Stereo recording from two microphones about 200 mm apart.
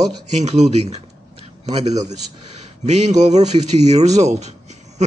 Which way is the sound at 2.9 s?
35° right (ahead or behind).